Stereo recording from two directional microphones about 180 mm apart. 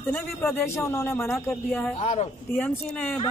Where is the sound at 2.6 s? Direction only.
10° left (ahead or behind).